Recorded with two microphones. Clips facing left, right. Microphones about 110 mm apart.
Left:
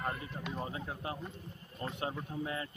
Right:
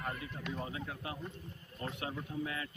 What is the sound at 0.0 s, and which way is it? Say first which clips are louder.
Horse: left 3 dB; 30° left (ahead or behind).